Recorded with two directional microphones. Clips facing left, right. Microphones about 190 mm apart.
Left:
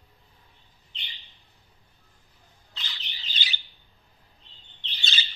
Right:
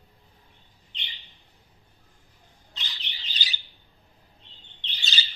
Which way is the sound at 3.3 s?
40° right (ahead or behind).